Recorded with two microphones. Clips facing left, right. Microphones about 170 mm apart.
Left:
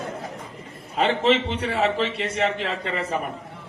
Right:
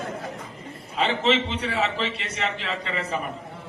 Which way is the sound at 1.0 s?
50° left (ahead or behind).